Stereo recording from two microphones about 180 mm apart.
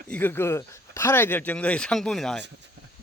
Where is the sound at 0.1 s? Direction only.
10° left (ahead or behind).